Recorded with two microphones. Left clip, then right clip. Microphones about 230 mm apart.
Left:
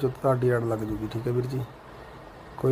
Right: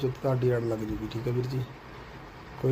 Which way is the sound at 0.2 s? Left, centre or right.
Centre.